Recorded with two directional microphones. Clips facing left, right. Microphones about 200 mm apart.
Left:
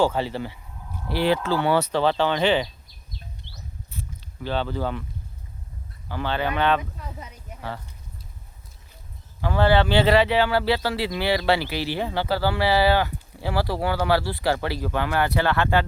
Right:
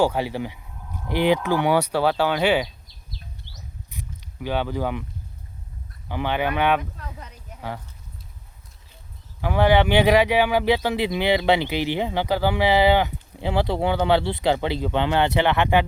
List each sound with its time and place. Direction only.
0.0 s speech: 10° right (ahead or behind)
3.9 s a sound: 15° right (ahead or behind)
6.1 s speech: 15° right (ahead or behind)
6.9 s speech: 10° left (ahead or behind)
9.4 s speech: 15° right (ahead or behind)